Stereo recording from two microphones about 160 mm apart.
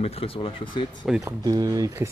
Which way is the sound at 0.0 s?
35° left (ahead or behind).